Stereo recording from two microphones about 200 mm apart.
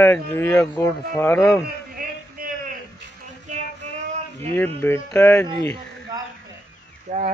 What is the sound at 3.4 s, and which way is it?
Music, 35° right (ahead or behind).